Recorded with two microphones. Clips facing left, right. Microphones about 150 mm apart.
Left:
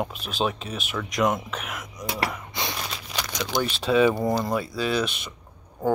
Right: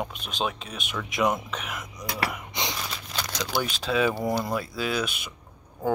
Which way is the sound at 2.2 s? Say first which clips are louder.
Left 1 dB; 15° right (ahead or behind).